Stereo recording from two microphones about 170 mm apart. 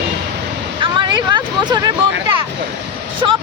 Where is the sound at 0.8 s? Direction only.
25° right (ahead or behind).